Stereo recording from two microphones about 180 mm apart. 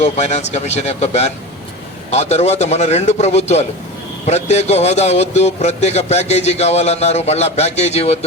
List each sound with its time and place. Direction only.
0.0 s speech: 40° left (ahead or behind)